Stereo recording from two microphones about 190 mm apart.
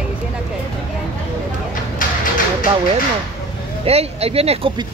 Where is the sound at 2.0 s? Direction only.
45° left (ahead or behind).